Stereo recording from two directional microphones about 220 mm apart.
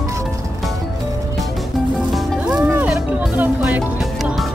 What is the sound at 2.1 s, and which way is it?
Music, 5° right (ahead or behind).